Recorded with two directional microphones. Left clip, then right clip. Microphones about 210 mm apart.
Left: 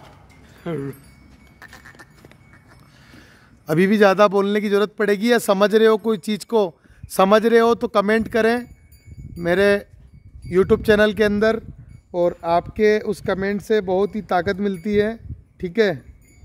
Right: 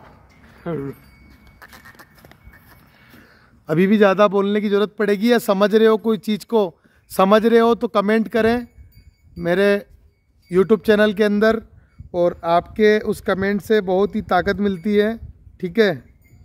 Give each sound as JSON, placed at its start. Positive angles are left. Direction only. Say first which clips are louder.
{"t": 0.6, "sound": "speech", "louder": "right 1 dB", "side_deg": -10}
{"t": 1.6, "sound": "keys jangling", "louder": "left 1 dB", "side_deg": -45}
{"t": 3.6, "sound": "speech", "louder": "even", "side_deg": 0}